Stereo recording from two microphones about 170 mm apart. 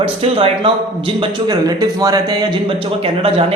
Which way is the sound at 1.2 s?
25° right (ahead or behind).